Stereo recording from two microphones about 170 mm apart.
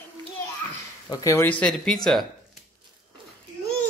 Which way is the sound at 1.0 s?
20° left (ahead or behind).